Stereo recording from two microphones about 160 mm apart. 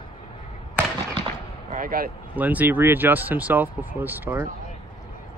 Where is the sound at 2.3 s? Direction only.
10° right (ahead or behind).